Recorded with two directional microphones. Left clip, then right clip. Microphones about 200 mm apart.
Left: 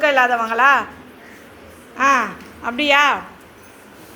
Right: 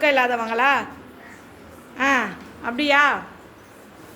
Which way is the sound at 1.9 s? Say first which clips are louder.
Left 5 dB; 20° right (ahead or behind).